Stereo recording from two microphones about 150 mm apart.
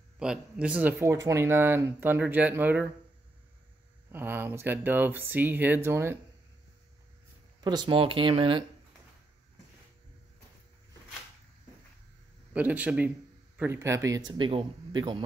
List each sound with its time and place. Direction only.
0.2 s speech: 5° right (ahead or behind)
4.1 s speech: 15° right (ahead or behind)
7.6 s speech: 30° right (ahead or behind)
12.5 s a man's voice: 10° right (ahead or behind)
14.3 s speech: 35° right (ahead or behind)